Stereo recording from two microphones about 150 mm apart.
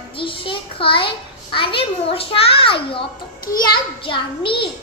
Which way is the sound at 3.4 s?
75° left (ahead or behind).